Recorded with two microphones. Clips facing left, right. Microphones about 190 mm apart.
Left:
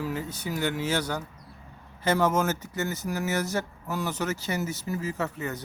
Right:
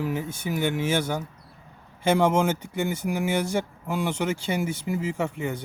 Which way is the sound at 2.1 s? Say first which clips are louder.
Right 3 dB; 15° right (ahead or behind).